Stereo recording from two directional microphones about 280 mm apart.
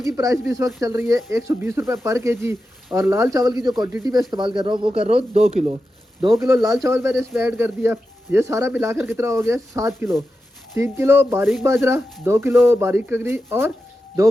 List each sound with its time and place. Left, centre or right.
0.0 s speech: centre
6.8 s speech: centre